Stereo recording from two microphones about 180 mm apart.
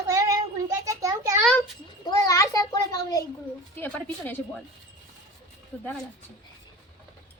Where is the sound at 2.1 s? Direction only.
20° left (ahead or behind).